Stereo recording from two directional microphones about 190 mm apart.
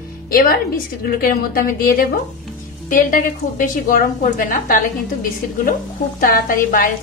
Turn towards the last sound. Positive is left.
turn(degrees=45)  # may be behind; listen again after turning